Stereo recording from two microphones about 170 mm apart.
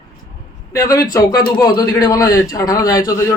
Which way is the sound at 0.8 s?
20° left (ahead or behind).